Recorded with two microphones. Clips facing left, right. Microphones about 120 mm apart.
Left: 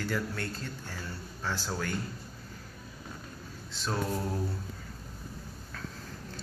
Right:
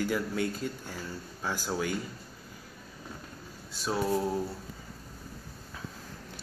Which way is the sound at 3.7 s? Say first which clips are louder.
Right 4 dB; 10° right (ahead or behind).